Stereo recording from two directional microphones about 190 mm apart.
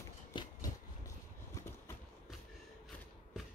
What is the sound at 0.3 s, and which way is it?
Train, 25° left (ahead or behind).